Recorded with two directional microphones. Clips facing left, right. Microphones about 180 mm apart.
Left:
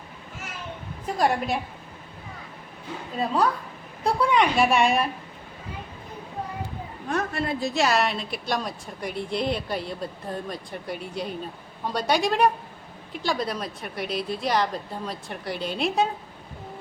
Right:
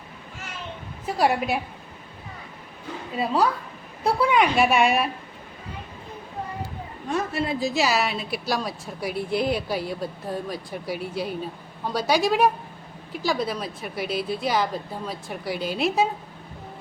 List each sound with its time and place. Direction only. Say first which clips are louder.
1.0 s a woman's voice: right 1 dB; 5° right (ahead or behind)
3.2 s a woman's voice: right 1 dB; 5° right (ahead or behind)
7.1 s a woman's voice: right 1 dB; centre (ahead or behind)